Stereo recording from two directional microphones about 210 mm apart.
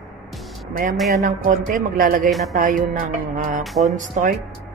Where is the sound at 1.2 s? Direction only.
40° right (ahead or behind).